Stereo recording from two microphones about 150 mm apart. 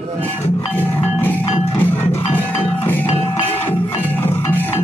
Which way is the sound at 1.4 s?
40° left (ahead or behind).